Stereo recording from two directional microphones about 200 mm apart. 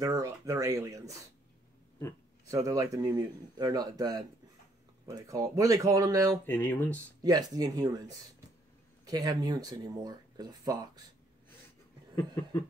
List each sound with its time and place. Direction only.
0.0 s speech: 15° right (ahead or behind)
2.4 s speech: 15° right (ahead or behind)
6.4 s speech: 10° left (ahead or behind)
7.2 s speech: 20° right (ahead or behind)
9.0 s speech: 20° right (ahead or behind)
12.2 s speech: 15° left (ahead or behind)